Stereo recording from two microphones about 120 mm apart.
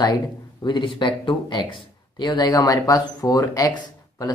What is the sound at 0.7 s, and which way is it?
Speech, 40° left (ahead or behind).